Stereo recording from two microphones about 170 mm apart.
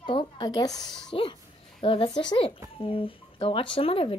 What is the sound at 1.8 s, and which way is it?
Speech, 30° left (ahead or behind).